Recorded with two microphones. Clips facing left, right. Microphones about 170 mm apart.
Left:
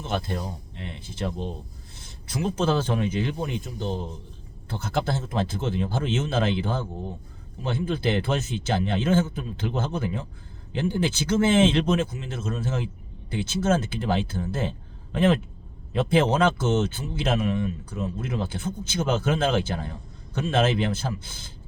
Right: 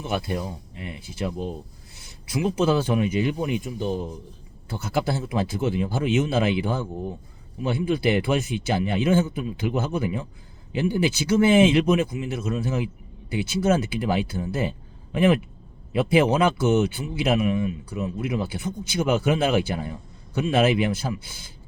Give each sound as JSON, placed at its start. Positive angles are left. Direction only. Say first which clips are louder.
{"t": 0.0, "sound": "speech", "louder": "right 2 dB", "side_deg": -10}